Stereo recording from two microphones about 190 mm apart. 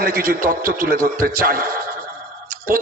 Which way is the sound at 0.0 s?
50° right (ahead or behind).